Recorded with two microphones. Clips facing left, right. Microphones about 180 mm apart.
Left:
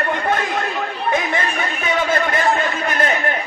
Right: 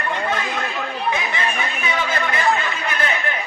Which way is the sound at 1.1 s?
45° left (ahead or behind).